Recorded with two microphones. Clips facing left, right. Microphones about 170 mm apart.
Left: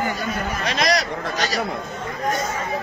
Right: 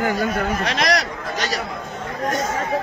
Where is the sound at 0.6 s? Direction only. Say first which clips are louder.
Left 2 dB; 65° right (ahead or behind).